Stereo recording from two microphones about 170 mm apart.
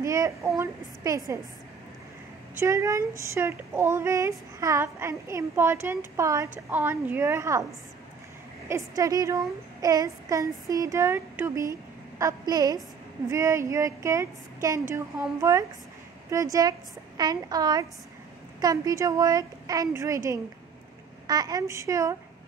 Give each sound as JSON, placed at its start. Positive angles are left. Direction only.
{"t": 0.0, "sound": "a woman's voice", "side_deg": -20}
{"t": 2.6, "sound": "speech", "side_deg": -20}
{"t": 8.6, "sound": "a child's voice", "side_deg": -20}